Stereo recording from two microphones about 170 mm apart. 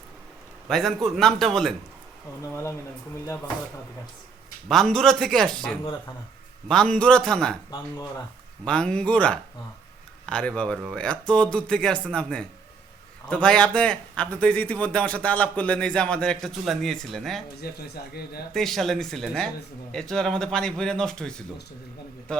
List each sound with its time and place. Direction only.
0.7 s speech: centre (ahead or behind)
2.4 s speech: 15° left (ahead or behind)
4.7 s speech: 5° left (ahead or behind)
8.6 s speech: 5° left (ahead or behind)
17.6 s speech: 65° left (ahead or behind)
18.5 s speech: centre (ahead or behind)